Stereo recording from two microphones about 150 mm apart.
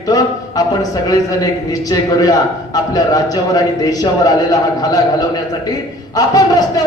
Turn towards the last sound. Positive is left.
turn(degrees=25)  # may be behind; listen again after turning